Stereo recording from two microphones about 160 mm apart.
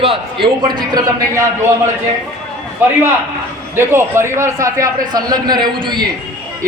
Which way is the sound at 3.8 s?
15° right (ahead or behind).